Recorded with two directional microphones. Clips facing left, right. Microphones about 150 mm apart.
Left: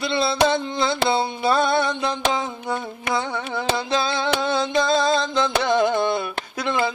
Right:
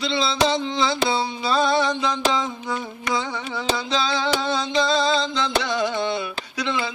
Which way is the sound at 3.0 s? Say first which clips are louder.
Left 1 dB; 55° left (ahead or behind).